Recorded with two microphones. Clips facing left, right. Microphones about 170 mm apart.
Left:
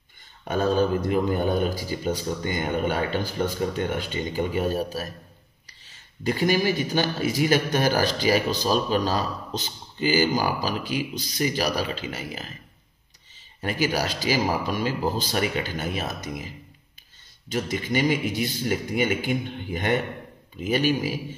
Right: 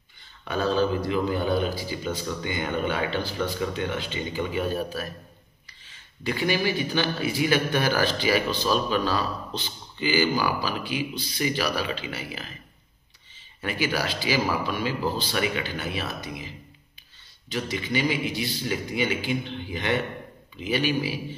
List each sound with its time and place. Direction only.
0.5 s a man's voice: 45° left (ahead or behind)
13.6 s a man's voice: 40° left (ahead or behind)